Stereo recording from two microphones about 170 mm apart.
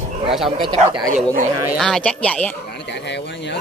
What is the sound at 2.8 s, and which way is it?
Speech, 90° left.